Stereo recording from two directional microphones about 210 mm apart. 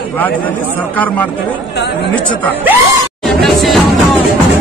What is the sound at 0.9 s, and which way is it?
Speech, 5° left (ahead or behind).